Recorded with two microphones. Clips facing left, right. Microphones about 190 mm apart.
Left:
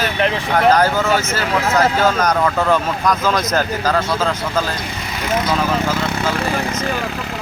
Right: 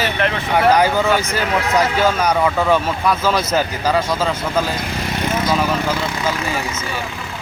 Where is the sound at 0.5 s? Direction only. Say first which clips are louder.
Even; 10° right (ahead or behind).